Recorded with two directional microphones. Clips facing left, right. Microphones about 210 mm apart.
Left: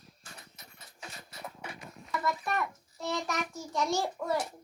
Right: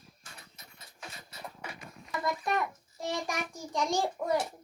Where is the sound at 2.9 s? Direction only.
15° right (ahead or behind).